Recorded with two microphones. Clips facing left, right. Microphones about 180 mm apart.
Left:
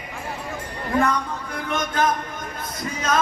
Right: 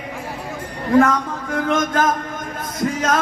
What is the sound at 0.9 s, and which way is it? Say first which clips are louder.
Music: right 6 dB; 90° right.